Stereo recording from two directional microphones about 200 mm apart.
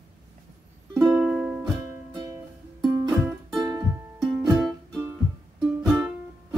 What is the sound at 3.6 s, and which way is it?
Music, 20° right (ahead or behind).